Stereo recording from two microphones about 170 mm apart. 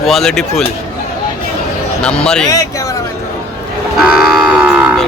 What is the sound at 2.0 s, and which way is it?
Speech, 5° left (ahead or behind).